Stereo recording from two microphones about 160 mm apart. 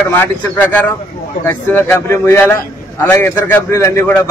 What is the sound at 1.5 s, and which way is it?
A man's voice, 15° left (ahead or behind).